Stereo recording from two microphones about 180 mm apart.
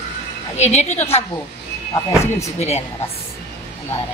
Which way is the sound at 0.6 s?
40° left (ahead or behind).